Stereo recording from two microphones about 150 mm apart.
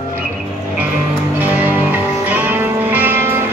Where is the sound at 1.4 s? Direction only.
10° right (ahead or behind).